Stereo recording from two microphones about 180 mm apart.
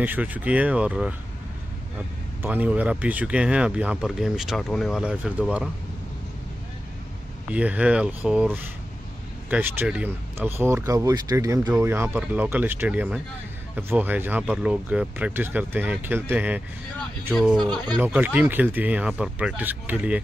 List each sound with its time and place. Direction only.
0.0 s speech: 10° right (ahead or behind)
2.4 s speech: 10° right (ahead or behind)
7.5 s speech: 5° right (ahead or behind)
17.3 s speech: centre (ahead or behind)
17.9 s speech: 10° right (ahead or behind)